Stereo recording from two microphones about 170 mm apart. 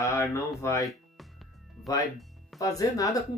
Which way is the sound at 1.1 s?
Centre (ahead or behind).